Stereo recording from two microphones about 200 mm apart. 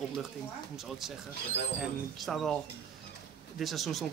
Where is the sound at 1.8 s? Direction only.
Centre (ahead or behind).